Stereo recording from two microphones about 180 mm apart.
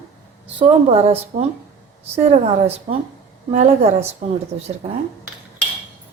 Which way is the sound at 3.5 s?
35° right (ahead or behind).